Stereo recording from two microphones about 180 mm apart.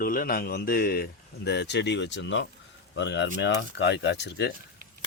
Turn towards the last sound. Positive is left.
turn(degrees=70)  # may be behind; listen again after turning